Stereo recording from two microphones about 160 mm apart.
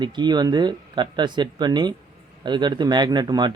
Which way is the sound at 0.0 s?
25° right (ahead or behind).